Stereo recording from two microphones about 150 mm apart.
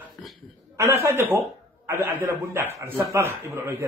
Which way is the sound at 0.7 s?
20° right (ahead or behind).